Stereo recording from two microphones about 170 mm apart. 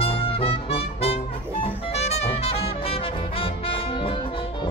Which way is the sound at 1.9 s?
40° left (ahead or behind).